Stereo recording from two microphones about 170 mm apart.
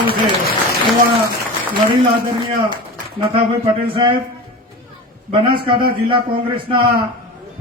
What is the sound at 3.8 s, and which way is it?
Speech, 30° right (ahead or behind).